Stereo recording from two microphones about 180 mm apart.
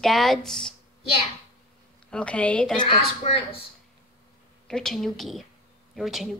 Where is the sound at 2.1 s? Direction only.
5° left (ahead or behind).